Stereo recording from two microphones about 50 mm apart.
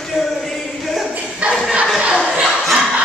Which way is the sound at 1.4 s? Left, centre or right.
Right.